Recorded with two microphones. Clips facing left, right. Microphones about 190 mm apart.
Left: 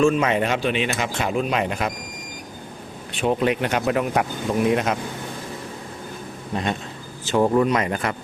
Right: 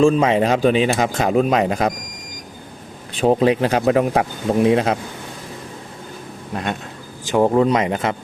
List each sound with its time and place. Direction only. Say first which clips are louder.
0.0 s speech: right 4 dB; 30° right (ahead or behind)
3.2 s speech: right 5 dB; 35° right (ahead or behind)
6.5 s speech: even; centre (ahead or behind)
7.3 s speech: right 3 dB; 20° right (ahead or behind)